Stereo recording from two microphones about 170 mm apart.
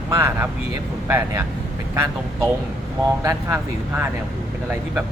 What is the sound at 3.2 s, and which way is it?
Speech, 20° right (ahead or behind).